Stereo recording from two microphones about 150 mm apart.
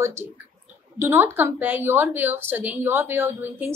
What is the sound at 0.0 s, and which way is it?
A woman's voice, 15° right (ahead or behind).